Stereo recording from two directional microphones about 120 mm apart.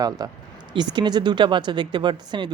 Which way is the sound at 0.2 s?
35° right (ahead or behind).